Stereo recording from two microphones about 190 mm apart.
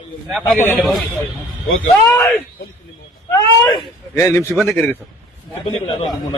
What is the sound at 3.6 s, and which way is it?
Speech, 20° left (ahead or behind).